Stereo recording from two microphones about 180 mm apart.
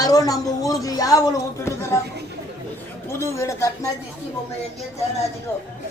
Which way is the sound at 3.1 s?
15° left (ahead or behind).